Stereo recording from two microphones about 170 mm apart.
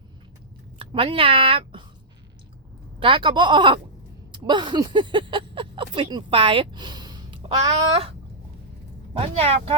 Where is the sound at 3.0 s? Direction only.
30° right (ahead or behind).